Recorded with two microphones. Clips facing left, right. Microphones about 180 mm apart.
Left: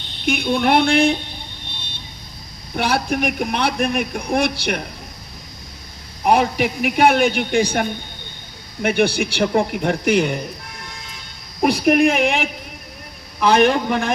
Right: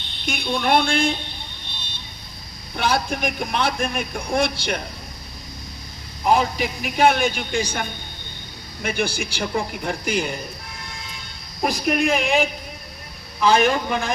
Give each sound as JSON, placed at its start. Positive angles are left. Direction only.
{"t": 0.3, "sound": "a man's voice", "side_deg": 60}
{"t": 2.7, "sound": "a man's voice", "side_deg": 65}
{"t": 6.2, "sound": "a man's voice", "side_deg": 65}
{"t": 11.6, "sound": "a man's voice", "side_deg": 65}